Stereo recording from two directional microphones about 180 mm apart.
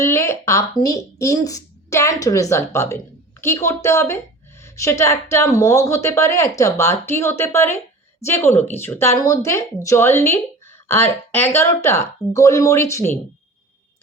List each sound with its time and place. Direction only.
0.0 s a woman's voice: 15° left (ahead or behind)